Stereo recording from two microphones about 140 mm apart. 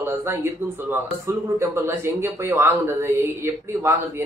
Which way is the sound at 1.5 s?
20° right (ahead or behind).